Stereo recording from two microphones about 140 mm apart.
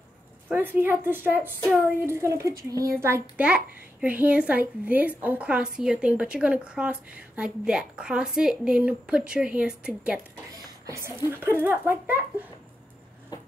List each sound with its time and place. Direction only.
0.5 s a child's voice: 15° right (ahead or behind)
3.4 s a child's voice: 10° right (ahead or behind)
10.9 s a child's voice: 20° right (ahead or behind)